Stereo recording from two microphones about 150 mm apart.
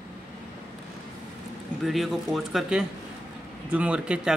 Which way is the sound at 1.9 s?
Centre (ahead or behind).